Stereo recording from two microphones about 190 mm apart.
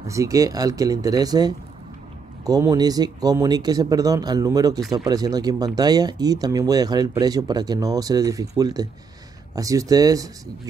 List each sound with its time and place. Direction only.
0.0 s speech: 15° right (ahead or behind)